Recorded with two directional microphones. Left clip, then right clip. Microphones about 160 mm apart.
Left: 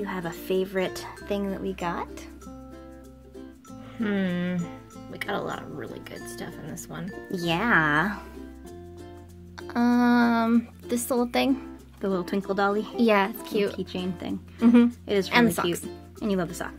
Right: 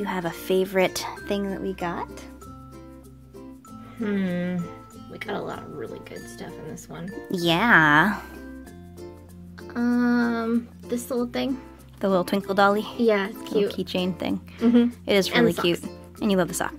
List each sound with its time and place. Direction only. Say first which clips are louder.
0.0 s speech: right 4 dB; 25° right (ahead or behind)
1.4 s speech: right 1 dB; 10° right (ahead or behind)
4.0 s speech: right 1 dB; 50° left (ahead or behind)
7.2 s speech: right 5 dB; 30° right (ahead or behind)
9.6 s music: left 2 dB; 55° left (ahead or behind)
12.0 s speech: right 5 dB; 35° right (ahead or behind)
12.9 s speech: even; 55° left (ahead or behind)
13.7 s speech: right 4 dB; 35° right (ahead or behind)
14.6 s a woman's voice: left 1 dB; 55° left (ahead or behind)
15.0 s speech: right 4 dB; 35° right (ahead or behind)
15.3 s speech: right 1 dB; 55° left (ahead or behind)
15.6 s speech: right 4 dB; 35° right (ahead or behind)